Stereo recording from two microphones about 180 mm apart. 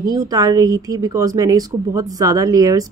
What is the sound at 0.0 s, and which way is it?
Speech, 20° right (ahead or behind).